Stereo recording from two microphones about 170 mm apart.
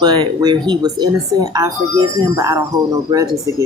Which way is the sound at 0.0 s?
25° right (ahead or behind).